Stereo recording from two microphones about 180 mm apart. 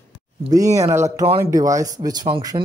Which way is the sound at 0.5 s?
20° right (ahead or behind).